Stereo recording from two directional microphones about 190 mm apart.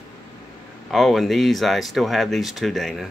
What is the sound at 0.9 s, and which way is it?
Speech, centre (ahead or behind).